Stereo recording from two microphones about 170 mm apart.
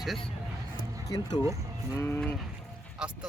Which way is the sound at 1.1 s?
25° left (ahead or behind).